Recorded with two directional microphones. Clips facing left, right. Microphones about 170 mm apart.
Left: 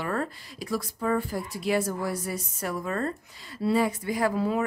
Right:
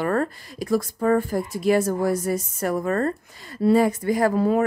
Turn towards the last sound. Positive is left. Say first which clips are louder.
# right 6 dB
turn(degrees=-45)  # may be behind; listen again after turning